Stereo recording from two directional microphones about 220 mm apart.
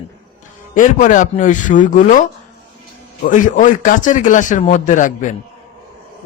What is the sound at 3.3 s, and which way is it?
Speech, 35° left (ahead or behind).